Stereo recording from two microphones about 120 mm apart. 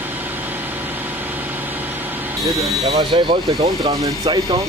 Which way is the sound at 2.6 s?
50° right (ahead or behind).